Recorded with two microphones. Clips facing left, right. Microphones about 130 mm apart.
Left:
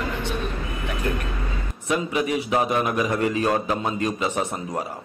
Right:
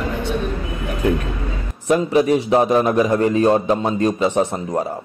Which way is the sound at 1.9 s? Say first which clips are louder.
Right 8 dB; 35° right (ahead or behind).